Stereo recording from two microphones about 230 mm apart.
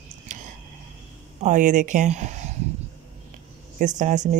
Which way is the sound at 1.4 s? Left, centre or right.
Right.